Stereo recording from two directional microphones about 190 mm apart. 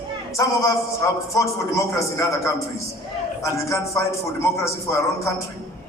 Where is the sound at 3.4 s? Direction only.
15° left (ahead or behind).